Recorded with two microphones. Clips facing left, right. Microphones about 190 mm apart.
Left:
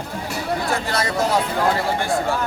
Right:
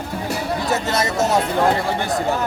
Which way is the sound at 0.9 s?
25° right (ahead or behind).